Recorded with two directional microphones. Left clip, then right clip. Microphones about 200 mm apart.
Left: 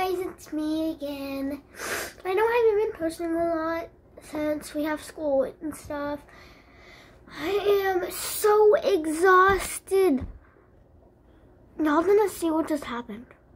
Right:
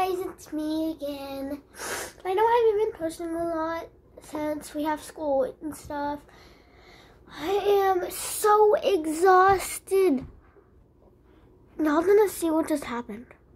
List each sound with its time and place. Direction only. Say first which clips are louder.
0.0 s child singing: even; 10° right (ahead or behind)
7.2 s speech: even; 10° right (ahead or behind)
11.7 s speech: even; 15° right (ahead or behind)